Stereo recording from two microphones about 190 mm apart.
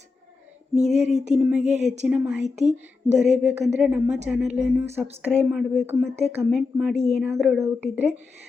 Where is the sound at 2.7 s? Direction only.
5° right (ahead or behind).